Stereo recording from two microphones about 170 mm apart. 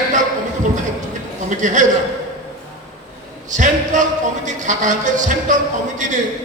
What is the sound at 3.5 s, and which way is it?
Speech, 45° right (ahead or behind).